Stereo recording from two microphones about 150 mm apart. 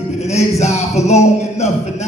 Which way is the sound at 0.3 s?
50° left (ahead or behind).